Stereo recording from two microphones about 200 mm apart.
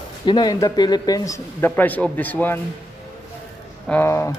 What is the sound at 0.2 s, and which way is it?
Speech, 20° left (ahead or behind).